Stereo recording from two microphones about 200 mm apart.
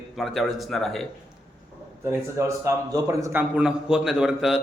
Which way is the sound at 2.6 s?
15° right (ahead or behind).